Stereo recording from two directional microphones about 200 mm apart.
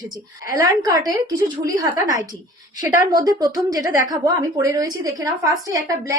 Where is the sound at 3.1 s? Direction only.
20° right (ahead or behind).